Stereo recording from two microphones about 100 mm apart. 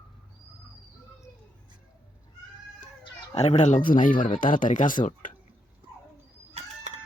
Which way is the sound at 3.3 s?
90° left.